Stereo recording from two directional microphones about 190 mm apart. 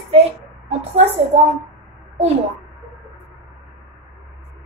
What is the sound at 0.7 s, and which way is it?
Speech, 35° right (ahead or behind).